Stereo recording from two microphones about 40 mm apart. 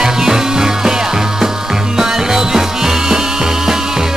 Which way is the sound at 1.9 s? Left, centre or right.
Centre.